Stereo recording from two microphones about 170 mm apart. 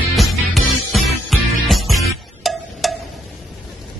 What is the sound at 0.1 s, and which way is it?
Music, centre (ahead or behind).